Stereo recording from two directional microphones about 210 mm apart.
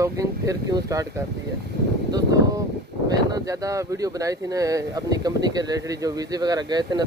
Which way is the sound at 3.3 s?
15° right (ahead or behind).